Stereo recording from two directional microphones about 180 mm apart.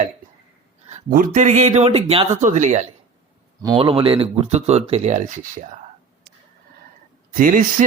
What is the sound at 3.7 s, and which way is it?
Speech, 30° right (ahead or behind).